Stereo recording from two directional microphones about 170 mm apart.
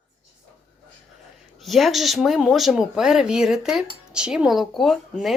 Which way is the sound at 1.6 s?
Centre (ahead or behind).